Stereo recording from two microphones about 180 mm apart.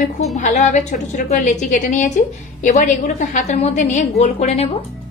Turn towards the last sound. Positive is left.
turn(degrees=35)  # may be behind; listen again after turning